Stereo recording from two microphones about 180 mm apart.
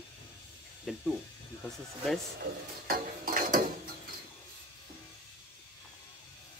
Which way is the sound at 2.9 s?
50° right (ahead or behind).